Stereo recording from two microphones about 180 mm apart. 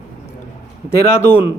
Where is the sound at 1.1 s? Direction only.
15° left (ahead or behind).